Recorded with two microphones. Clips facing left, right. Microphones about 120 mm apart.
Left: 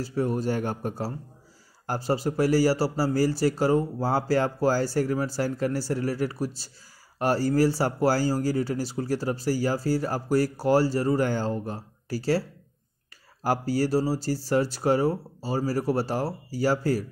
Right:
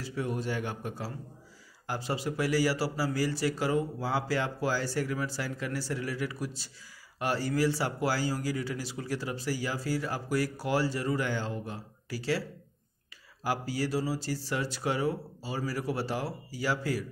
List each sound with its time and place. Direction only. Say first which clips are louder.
0.0 s speech: left 7 dB; 40° left (ahead or behind)